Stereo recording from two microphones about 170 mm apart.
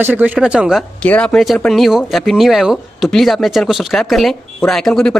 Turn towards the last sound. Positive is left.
turn(degrees=5)  # may be behind; listen again after turning